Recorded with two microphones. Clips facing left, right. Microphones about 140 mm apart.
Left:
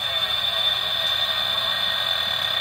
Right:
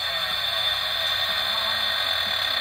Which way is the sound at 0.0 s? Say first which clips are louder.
Left 1 dB; 10° left (ahead or behind).